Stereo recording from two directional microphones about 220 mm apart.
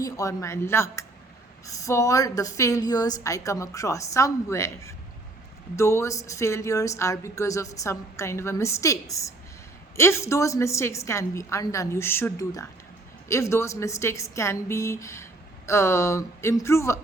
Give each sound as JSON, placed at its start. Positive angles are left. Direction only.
{"t": 0.0, "sound": "a woman's voice", "side_deg": 15}